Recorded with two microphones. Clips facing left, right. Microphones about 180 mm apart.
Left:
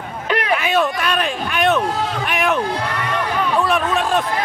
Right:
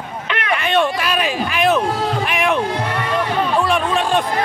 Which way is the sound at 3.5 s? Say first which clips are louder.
Even; centre (ahead or behind).